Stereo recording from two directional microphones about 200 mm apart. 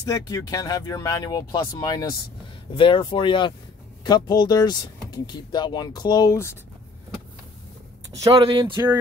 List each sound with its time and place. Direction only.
0.0 s speech: 15° left (ahead or behind)
8.2 s speech: 25° right (ahead or behind)